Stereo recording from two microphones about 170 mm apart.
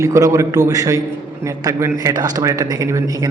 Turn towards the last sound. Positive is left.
turn(degrees=-20)  # may be behind; listen again after turning